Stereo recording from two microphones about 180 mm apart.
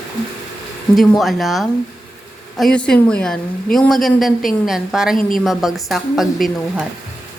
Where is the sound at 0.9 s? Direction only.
Centre (ahead or behind).